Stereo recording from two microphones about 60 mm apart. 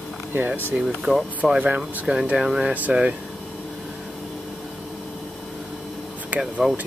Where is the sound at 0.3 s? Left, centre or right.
Right.